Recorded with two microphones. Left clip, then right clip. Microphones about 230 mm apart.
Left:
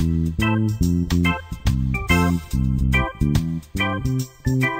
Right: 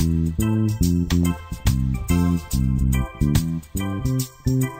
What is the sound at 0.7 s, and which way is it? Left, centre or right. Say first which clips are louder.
Music: even; centre.